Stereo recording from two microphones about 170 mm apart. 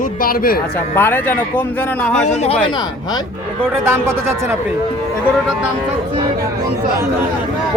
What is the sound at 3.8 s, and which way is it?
Speech, 15° right (ahead or behind).